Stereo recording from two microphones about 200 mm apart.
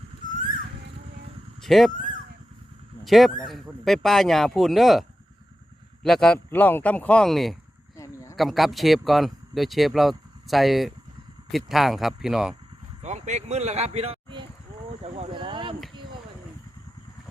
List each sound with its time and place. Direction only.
1.6 s speech: centre (ahead or behind)
3.0 s speech: centre (ahead or behind)
7.9 s a sound: 15° left (ahead or behind)
8.4 s speech: centre (ahead or behind)
13.0 s speech: 35° right (ahead or behind)